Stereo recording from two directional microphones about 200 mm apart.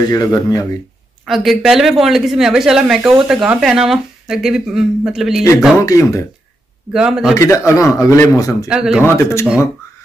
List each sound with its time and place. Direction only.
0.1 s a man's voice: 15° left (ahead or behind)
1.2 s speech: centre (ahead or behind)
5.9 s a man's voice: 15° left (ahead or behind)
6.9 s speech: centre (ahead or behind)
7.3 s a man's voice: 15° left (ahead or behind)
8.6 s speech: 5° right (ahead or behind)
9.0 s a man's voice: 15° left (ahead or behind)